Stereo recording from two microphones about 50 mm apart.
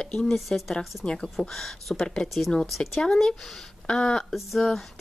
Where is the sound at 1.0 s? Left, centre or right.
Centre.